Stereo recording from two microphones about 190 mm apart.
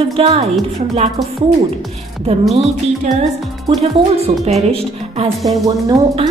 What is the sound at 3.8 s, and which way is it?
A woman's voice, 35° right (ahead or behind).